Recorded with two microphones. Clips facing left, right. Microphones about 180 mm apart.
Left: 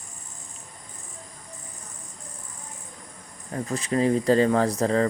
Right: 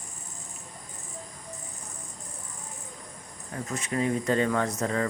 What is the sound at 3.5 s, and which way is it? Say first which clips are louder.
Speech: left 5 dB; 35° left (ahead or behind).